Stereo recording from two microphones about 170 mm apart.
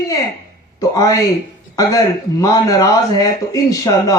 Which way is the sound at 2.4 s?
20° left (ahead or behind).